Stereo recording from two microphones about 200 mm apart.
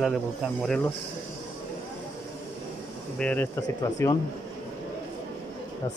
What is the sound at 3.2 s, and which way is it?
Speech, 5° left (ahead or behind).